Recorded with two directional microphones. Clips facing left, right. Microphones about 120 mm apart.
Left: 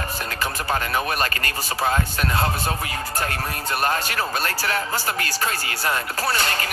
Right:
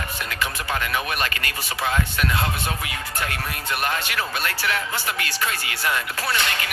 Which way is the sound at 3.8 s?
40° left (ahead or behind).